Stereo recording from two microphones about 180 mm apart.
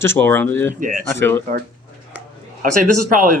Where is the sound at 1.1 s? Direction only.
10° left (ahead or behind).